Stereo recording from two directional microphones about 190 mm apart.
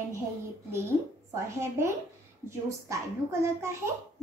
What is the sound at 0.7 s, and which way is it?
A child's voice, 15° right (ahead or behind).